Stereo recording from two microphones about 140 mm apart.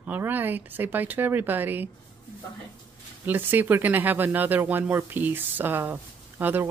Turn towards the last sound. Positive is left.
turn(degrees=-15)  # may be behind; listen again after turning